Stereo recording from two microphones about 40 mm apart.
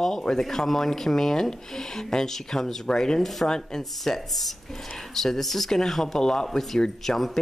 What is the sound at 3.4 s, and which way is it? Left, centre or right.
Speech, centre.